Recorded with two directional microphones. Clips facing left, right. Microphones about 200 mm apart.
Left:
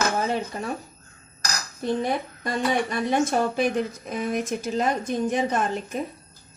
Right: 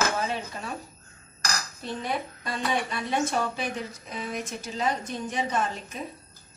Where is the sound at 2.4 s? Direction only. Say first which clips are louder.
Left 6 dB; 50° left (ahead or behind).